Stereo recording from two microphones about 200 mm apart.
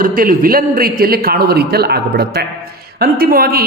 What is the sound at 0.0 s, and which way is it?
Speech, 45° right (ahead or behind).